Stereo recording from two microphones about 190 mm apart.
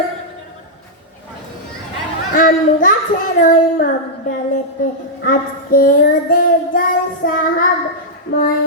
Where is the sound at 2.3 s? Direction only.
45° left (ahead or behind).